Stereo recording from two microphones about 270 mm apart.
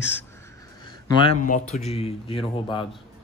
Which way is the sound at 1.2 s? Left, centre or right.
Left.